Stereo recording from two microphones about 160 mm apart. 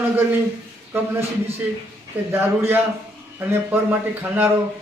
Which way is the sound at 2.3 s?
15° right (ahead or behind).